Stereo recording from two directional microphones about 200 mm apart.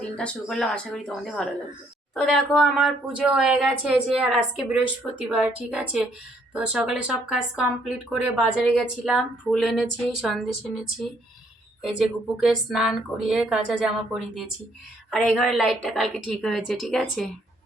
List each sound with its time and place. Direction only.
0.0 s speech: 5° left (ahead or behind)
12.4 s speech: centre (ahead or behind)